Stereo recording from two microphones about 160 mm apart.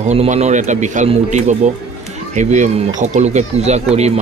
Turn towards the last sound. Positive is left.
turn(degrees=-45)  # may be behind; listen again after turning